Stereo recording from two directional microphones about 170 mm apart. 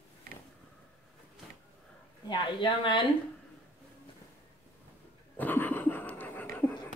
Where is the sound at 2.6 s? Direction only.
30° left (ahead or behind).